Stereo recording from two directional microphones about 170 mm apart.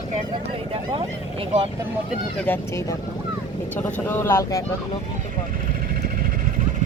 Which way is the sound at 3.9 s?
10° left (ahead or behind).